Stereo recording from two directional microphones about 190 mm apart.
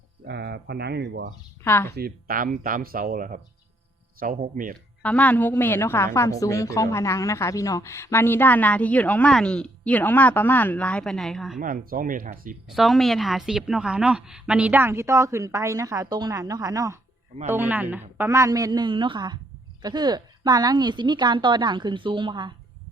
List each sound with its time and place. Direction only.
0.3 s speech: 60° right (ahead or behind)
1.6 s a woman's voice: 10° left (ahead or behind)
2.0 s speech: 50° right (ahead or behind)
5.0 s a woman's voice: 5° left (ahead or behind)
11.6 s speech: 45° right (ahead or behind)
12.6 s a woman's voice: centre (ahead or behind); by 22.5 s 25° right (ahead or behind)